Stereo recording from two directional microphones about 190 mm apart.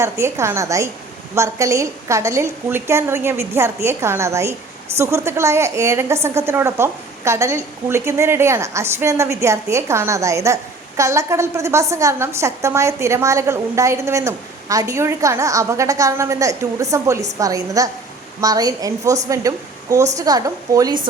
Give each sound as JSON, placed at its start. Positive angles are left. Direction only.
{"t": 0.0, "sound": "a woman's voice", "side_deg": -15}